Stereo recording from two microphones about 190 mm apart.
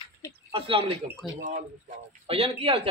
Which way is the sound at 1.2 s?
Centre (ahead or behind).